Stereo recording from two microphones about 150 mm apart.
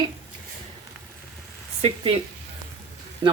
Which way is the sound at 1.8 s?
40° right (ahead or behind).